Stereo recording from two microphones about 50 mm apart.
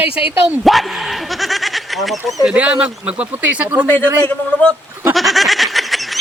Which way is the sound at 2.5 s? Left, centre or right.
Right.